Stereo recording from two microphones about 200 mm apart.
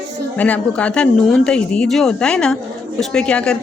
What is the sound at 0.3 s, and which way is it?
Speech, 5° left (ahead or behind).